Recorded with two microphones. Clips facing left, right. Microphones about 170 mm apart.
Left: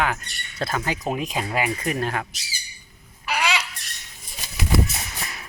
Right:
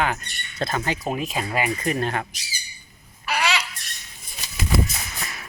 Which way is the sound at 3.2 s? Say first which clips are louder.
Even; 15° left (ahead or behind).